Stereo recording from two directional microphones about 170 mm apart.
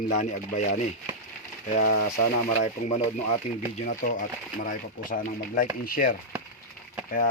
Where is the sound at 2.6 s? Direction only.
45° left (ahead or behind).